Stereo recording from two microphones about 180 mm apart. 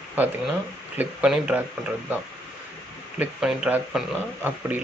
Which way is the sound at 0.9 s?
10° right (ahead or behind).